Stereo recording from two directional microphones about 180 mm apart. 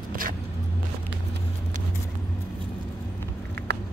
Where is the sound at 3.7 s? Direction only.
65° right (ahead or behind).